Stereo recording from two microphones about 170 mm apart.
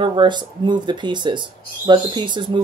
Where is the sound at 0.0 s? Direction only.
25° right (ahead or behind).